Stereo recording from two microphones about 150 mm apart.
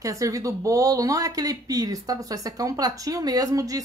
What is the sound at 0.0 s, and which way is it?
Speech, 20° right (ahead or behind).